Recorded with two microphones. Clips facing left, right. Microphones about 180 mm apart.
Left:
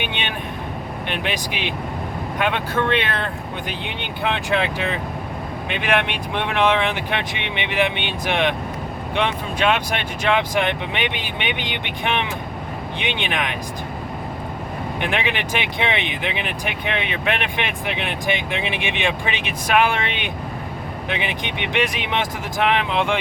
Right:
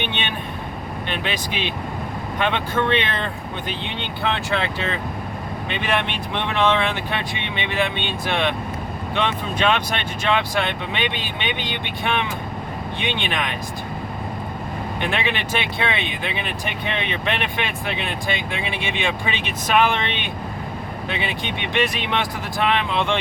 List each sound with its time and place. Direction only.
1.3 s speech: 15° left (ahead or behind)
15.1 s speech: 15° left (ahead or behind)